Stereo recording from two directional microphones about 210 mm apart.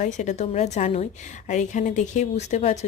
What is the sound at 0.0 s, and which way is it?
A woman's voice, 35° left (ahead or behind).